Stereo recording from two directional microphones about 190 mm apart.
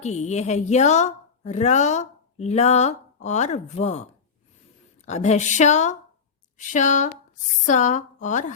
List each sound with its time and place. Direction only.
0.0 s a woman's voice: 35° left (ahead or behind)